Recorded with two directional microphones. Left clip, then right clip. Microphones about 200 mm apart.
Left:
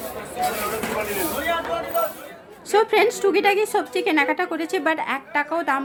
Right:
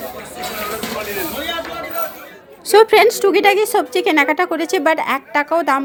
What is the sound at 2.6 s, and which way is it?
A woman's voice, 40° right (ahead or behind).